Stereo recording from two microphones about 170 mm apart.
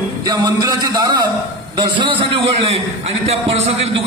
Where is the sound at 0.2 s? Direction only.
20° right (ahead or behind).